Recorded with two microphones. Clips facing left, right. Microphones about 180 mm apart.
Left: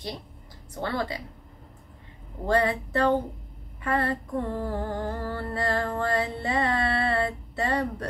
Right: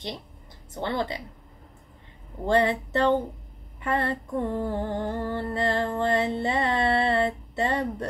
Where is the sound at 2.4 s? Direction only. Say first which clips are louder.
Right 2 dB; 25° right (ahead or behind).